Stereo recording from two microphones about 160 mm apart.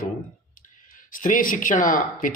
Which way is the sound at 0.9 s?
55° left (ahead or behind).